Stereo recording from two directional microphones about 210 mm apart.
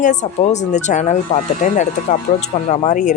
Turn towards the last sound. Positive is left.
turn(degrees=35)  # may be behind; listen again after turning